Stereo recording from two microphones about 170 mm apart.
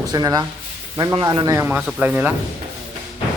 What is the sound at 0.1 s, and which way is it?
Speech, 20° right (ahead or behind).